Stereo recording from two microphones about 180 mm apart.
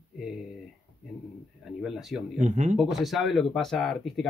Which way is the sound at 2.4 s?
40° right (ahead or behind).